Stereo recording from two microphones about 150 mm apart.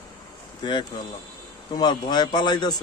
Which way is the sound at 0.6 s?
30° left (ahead or behind).